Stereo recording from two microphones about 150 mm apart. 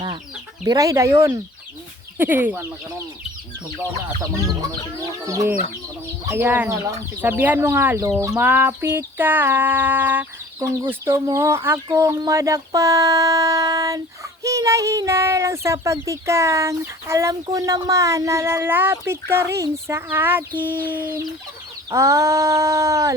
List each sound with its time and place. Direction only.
0.6 s speech: 20° right (ahead or behind)
5.2 s speech: 20° right (ahead or behind)